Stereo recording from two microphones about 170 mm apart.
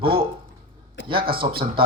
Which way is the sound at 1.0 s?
90° left.